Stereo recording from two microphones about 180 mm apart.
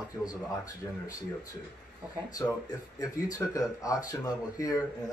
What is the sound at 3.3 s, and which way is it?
Speech, 20° left (ahead or behind).